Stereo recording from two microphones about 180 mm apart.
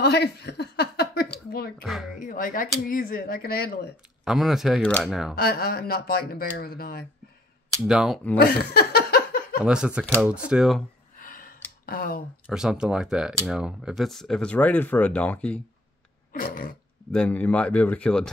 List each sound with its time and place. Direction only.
0.0 s a sound: 65° left (ahead or behind)
1.8 s speech: centre (ahead or behind)
2.1 s speech: 50° left (ahead or behind)
4.2 s speech: centre (ahead or behind)
5.3 s speech: 60° left (ahead or behind)
7.8 s speech: centre (ahead or behind)
8.4 s a sound: 60° left (ahead or behind)
9.7 s speech: 5° right (ahead or behind)
11.1 s a sound: 50° left (ahead or behind)
11.8 s speech: 55° left (ahead or behind)
12.4 s speech: 5° right (ahead or behind)
16.3 s speech: 50° left (ahead or behind)
17.1 s speech: 5° left (ahead or behind)